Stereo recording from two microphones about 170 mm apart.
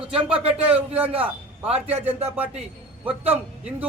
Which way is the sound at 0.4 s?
35° right (ahead or behind).